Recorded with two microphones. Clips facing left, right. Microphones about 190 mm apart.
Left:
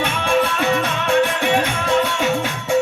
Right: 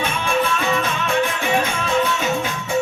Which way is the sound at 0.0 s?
70° left (ahead or behind).